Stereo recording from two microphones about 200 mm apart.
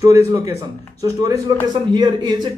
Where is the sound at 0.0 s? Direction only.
15° right (ahead or behind).